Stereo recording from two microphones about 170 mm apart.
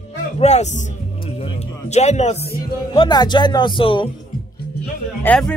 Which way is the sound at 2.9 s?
25° left (ahead or behind).